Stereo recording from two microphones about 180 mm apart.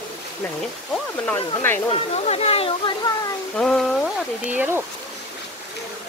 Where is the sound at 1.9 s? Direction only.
35° left (ahead or behind).